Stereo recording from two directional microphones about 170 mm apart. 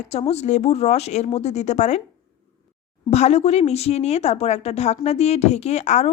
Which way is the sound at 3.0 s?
40° left (ahead or behind).